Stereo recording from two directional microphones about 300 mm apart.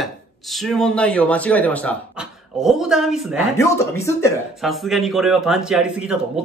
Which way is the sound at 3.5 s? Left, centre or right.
Centre.